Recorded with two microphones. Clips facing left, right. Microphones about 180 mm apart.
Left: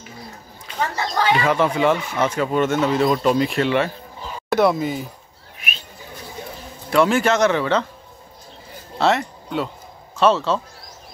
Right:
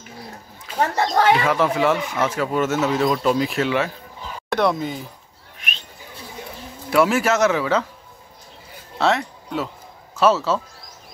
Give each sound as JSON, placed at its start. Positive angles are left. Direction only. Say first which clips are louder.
{"t": 0.7, "sound": "speech", "louder": "right 4 dB", "side_deg": -55}
{"t": 1.4, "sound": "speech", "louder": "left 1 dB", "side_deg": 0}
{"t": 5.6, "sound": "livestock", "louder": "left 1 dB", "side_deg": 5}
{"t": 6.9, "sound": "speech", "louder": "left 1 dB", "side_deg": -5}
{"t": 8.9, "sound": "speech", "louder": "left 1 dB", "side_deg": 0}